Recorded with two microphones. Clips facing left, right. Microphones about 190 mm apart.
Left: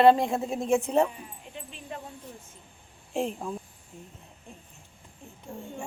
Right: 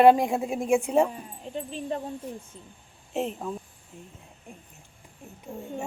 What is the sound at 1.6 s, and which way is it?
Speech, 35° right (ahead or behind).